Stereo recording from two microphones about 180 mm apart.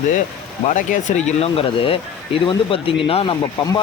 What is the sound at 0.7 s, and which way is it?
Speech, 45° left (ahead or behind).